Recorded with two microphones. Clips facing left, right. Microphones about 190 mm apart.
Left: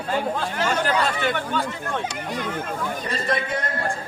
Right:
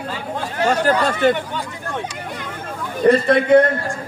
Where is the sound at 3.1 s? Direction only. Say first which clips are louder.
Right 16 dB; 60° right (ahead or behind).